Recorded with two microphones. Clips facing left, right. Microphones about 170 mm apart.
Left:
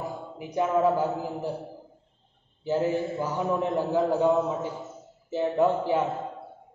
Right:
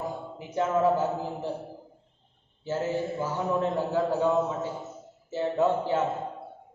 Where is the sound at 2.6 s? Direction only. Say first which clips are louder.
Left 3 dB; 15° left (ahead or behind).